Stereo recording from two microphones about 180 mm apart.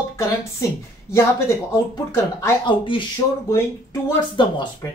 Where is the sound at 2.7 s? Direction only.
30° left (ahead or behind).